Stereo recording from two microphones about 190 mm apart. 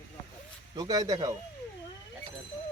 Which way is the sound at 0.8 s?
20° right (ahead or behind).